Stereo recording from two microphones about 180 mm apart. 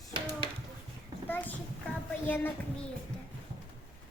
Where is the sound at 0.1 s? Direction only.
30° right (ahead or behind).